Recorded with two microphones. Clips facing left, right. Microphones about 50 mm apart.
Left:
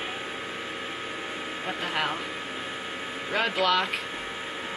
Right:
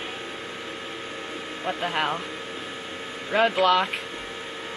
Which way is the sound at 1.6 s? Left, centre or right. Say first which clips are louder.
Right 4 dB; centre.